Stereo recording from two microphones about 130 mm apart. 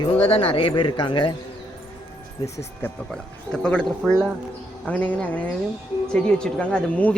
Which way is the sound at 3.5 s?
5° left (ahead or behind).